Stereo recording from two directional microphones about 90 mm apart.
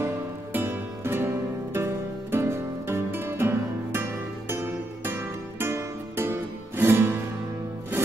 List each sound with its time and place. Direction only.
0.0 s music: 25° right (ahead or behind)